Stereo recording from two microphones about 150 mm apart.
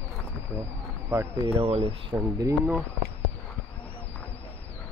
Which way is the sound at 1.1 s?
15° right (ahead or behind).